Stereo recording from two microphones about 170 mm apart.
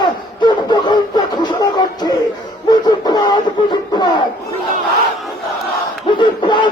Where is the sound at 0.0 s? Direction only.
25° left (ahead or behind).